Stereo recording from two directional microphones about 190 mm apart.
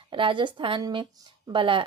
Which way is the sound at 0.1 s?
25° right (ahead or behind).